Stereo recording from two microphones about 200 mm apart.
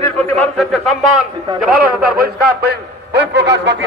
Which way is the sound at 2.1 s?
50° right (ahead or behind).